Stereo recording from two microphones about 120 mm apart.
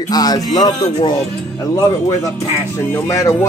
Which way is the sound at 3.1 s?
25° left (ahead or behind).